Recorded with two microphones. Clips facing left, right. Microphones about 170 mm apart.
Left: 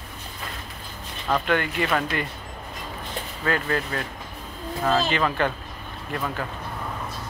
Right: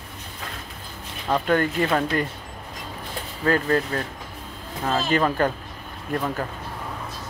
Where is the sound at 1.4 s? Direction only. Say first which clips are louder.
Right 3 dB; 40° right (ahead or behind).